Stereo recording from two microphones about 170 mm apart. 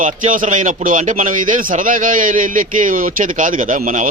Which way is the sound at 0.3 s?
50° right (ahead or behind).